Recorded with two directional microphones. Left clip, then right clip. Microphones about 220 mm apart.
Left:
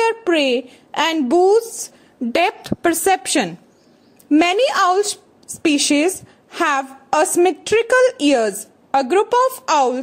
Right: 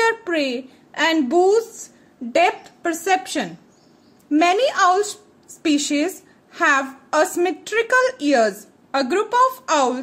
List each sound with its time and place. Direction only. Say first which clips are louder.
0.0 s a woman's voice: left 3 dB; 30° left (ahead or behind)